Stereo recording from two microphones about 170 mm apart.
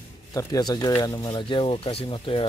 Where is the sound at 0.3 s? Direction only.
20° left (ahead or behind).